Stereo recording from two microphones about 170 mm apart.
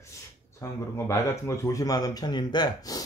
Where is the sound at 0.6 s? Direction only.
15° left (ahead or behind).